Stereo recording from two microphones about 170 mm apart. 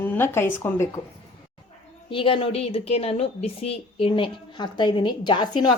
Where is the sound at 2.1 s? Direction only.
30° left (ahead or behind).